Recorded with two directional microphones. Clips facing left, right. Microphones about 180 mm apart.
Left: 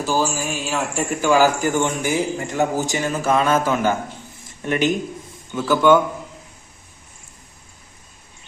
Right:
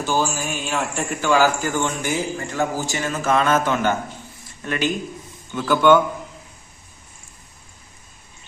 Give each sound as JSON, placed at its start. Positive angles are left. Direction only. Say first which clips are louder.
{"t": 0.0, "sound": "speech", "louder": "left 1 dB", "side_deg": 5}
{"t": 5.5, "sound": "speech", "louder": "even", "side_deg": 5}